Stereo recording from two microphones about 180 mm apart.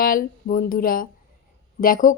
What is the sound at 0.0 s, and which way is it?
Speech, 50° left (ahead or behind).